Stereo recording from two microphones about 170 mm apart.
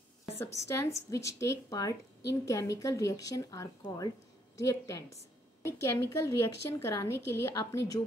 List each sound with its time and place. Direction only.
0.4 s a woman's voice: 15° left (ahead or behind)